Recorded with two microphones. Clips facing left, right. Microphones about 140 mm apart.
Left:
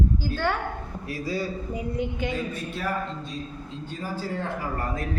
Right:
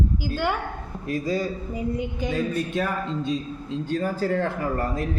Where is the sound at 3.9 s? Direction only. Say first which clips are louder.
Right 8 dB; 65° right (ahead or behind).